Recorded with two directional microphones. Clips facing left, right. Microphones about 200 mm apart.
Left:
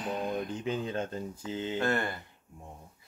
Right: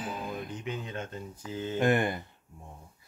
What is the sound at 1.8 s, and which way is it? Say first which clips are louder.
Speech: right 7 dB; 15° right (ahead or behind).